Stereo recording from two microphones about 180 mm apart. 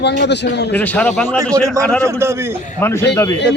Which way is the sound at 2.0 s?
15° right (ahead or behind).